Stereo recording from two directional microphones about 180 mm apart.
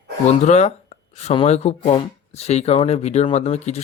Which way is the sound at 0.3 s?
40° left (ahead or behind).